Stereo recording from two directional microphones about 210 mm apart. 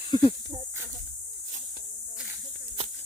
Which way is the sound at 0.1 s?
20° left (ahead or behind).